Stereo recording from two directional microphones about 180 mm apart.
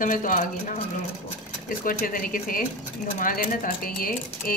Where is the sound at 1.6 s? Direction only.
50° left (ahead or behind).